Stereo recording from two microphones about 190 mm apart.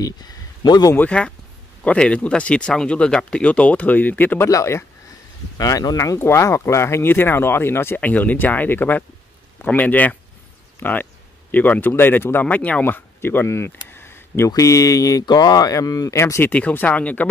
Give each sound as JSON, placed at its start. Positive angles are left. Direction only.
{"t": 0.0, "sound": "speech", "side_deg": 20}
{"t": 0.9, "sound": "speech", "side_deg": 5}